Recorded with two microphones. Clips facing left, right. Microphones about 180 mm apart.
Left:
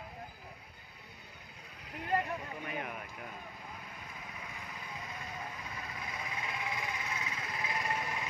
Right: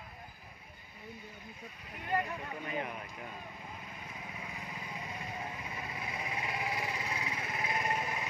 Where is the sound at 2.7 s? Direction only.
5° left (ahead or behind).